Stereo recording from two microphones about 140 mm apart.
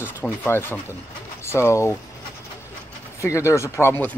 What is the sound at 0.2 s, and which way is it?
Speech, 15° left (ahead or behind).